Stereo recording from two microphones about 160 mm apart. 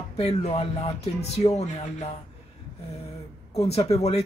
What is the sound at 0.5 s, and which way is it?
Speech, 30° left (ahead or behind).